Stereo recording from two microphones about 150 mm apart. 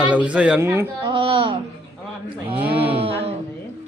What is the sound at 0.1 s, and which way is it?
Speech, 10° right (ahead or behind).